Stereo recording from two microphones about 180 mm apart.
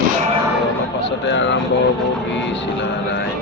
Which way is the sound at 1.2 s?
80° left.